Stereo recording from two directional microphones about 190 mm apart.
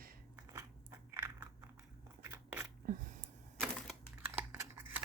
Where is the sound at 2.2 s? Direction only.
10° right (ahead or behind).